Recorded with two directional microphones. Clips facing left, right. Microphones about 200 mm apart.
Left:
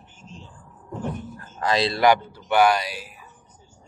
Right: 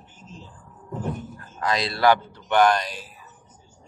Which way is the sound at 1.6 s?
30° left (ahead or behind).